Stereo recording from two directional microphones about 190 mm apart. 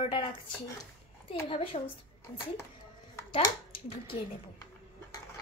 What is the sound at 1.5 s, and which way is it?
Speech, 30° left (ahead or behind).